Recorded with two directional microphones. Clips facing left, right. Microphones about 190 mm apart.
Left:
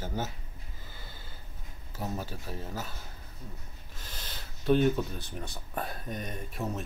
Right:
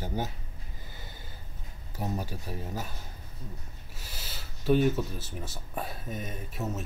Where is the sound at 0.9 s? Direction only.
15° right (ahead or behind).